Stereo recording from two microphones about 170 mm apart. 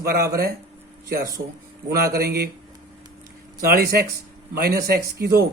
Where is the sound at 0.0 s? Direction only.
65° right (ahead or behind).